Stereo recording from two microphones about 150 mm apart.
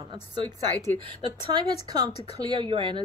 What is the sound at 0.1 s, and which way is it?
A woman's voice, 25° right (ahead or behind).